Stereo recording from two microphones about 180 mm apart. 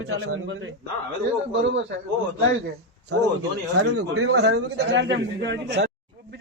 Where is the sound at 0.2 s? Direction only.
80° right.